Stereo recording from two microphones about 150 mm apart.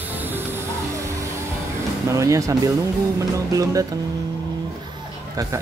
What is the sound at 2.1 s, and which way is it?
Speech, 20° right (ahead or behind).